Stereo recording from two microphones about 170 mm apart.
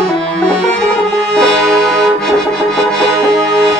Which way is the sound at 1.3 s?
5° left (ahead or behind).